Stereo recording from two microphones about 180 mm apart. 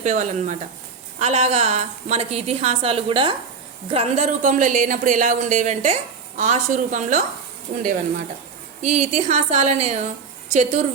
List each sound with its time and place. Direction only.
0.0 s a woman's voice: 40° right (ahead or behind)
8.8 s a woman's voice: 40° right (ahead or behind)